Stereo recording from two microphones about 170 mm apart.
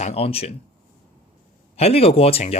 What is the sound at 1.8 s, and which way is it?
Speech, 35° left (ahead or behind).